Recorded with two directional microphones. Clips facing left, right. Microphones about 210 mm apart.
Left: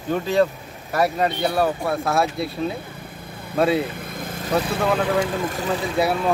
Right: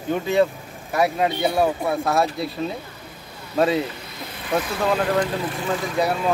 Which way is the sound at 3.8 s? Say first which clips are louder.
Left 1 dB; 50° left (ahead or behind).